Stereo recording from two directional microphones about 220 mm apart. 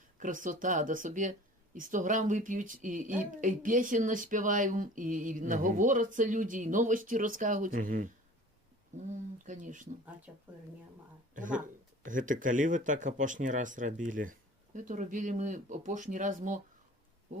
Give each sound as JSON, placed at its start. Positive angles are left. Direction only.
{"t": 0.2, "sound": "speech", "side_deg": -35}
{"t": 9.1, "sound": "speech", "side_deg": -35}
{"t": 10.3, "sound": "speech", "side_deg": -5}
{"t": 11.3, "sound": "speech", "side_deg": -35}